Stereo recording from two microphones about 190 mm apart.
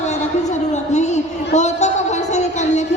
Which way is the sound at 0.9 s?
35° left (ahead or behind).